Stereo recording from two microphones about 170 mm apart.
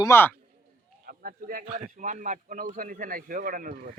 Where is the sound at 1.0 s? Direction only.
65° right (ahead or behind).